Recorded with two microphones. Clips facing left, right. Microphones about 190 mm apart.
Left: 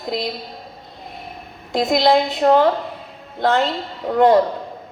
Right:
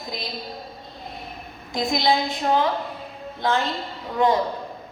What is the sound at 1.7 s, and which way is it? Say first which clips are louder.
A woman's voice: left 6 dB; 65° left (ahead or behind).